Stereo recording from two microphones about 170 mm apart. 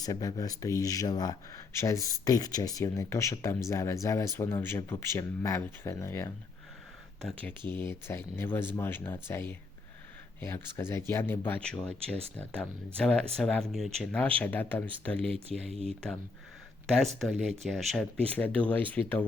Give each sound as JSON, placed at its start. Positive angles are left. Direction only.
{"t": 0.0, "sound": "speech", "side_deg": 20}
{"t": 7.2, "sound": "speech", "side_deg": 0}
{"t": 7.7, "sound": "speech", "side_deg": 15}
{"t": 17.2, "sound": "speech", "side_deg": 0}